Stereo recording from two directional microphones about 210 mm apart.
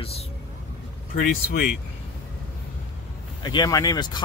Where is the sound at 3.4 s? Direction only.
20° left (ahead or behind).